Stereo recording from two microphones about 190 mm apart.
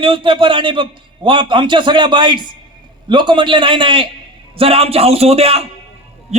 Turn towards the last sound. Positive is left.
turn(degrees=-35)  # may be behind; listen again after turning